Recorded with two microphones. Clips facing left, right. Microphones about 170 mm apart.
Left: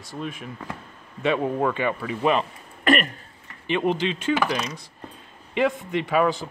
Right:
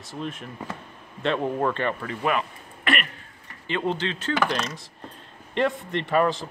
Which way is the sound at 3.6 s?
15° left (ahead or behind).